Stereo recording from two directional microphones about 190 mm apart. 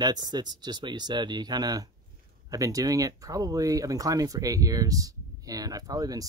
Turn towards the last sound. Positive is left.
turn(degrees=-20)  # may be behind; listen again after turning